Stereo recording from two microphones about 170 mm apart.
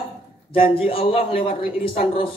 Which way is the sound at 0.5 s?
35° left (ahead or behind).